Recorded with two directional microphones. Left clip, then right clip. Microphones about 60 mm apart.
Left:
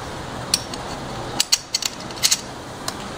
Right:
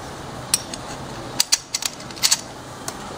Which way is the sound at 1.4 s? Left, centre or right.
Right.